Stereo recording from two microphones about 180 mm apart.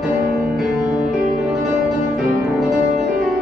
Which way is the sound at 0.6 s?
Centre (ahead or behind).